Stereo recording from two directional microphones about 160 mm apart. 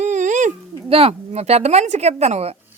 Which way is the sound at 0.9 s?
40° right (ahead or behind).